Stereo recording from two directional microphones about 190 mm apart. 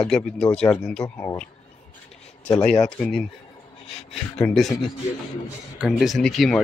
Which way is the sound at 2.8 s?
Centre (ahead or behind).